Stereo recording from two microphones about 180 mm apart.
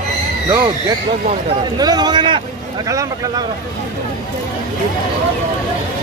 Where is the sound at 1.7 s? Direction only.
20° right (ahead or behind).